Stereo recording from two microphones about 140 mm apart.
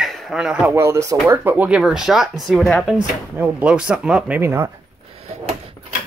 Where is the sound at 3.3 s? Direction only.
10° right (ahead or behind).